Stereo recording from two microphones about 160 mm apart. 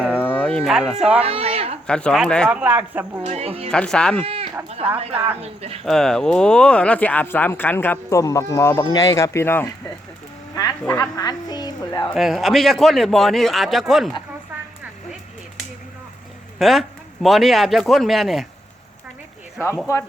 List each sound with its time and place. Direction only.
0.2 s a sound: 10° left (ahead or behind)
1.2 s a sound: 40° right (ahead or behind)
1.9 s a man's voice: 5° left (ahead or behind); by 3.2 s 10° right (ahead or behind)
3.2 s speech: 40° right (ahead or behind)
3.7 s a man's voice: 5° left (ahead or behind)
4.9 s speech: 40° right (ahead or behind)
5.8 s a woman's voice: 5° left (ahead or behind); by 12.0 s 25° left (ahead or behind)
12.1 s a man's voice: centre (ahead or behind)
16.6 s a man's voice: centre (ahead or behind)
19.5 s speech: 15° left (ahead or behind)